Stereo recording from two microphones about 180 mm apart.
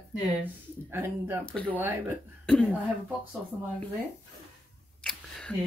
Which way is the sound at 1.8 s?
10° right (ahead or behind).